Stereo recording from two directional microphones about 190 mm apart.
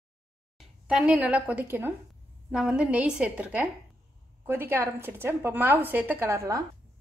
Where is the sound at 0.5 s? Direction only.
5° right (ahead or behind).